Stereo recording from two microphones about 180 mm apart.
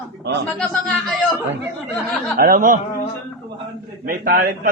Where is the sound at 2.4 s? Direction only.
50° right (ahead or behind).